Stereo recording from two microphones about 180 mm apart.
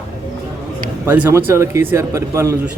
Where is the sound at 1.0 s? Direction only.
10° right (ahead or behind).